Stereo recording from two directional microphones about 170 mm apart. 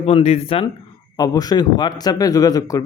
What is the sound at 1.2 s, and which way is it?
Speech, 20° left (ahead or behind).